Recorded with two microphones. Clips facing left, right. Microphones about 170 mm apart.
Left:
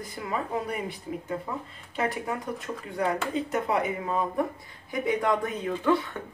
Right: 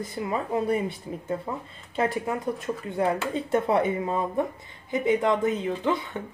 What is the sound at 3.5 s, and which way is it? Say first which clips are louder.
Speech: right 7 dB; 30° right (ahead or behind).